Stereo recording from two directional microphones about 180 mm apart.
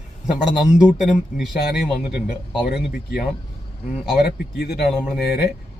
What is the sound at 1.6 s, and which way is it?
Speech, 60° left (ahead or behind).